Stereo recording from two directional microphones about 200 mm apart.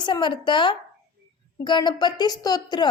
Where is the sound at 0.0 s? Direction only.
25° left (ahead or behind).